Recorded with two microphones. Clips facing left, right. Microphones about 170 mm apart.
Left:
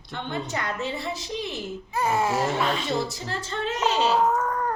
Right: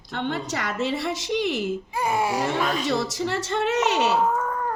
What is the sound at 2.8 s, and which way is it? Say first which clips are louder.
A woman's voice: right 3 dB; 85° right.